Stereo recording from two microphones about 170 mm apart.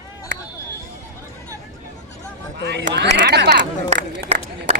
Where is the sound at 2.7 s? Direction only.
90° right.